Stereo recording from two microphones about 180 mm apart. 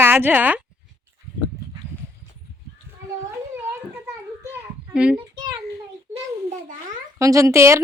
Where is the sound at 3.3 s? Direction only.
15° right (ahead or behind).